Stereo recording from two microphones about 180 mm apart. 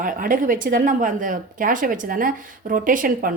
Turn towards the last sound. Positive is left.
turn(degrees=-50)  # may be behind; listen again after turning